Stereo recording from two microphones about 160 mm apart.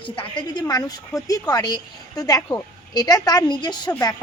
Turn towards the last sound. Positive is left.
turn(degrees=25)  # may be behind; listen again after turning